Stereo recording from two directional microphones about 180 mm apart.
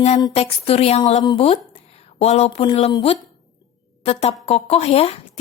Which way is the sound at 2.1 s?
35° left (ahead or behind).